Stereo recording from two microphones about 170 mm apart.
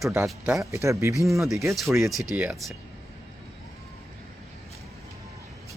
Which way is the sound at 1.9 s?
Centre (ahead or behind).